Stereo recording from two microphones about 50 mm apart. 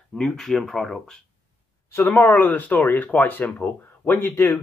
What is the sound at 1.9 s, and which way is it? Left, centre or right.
Speech, left.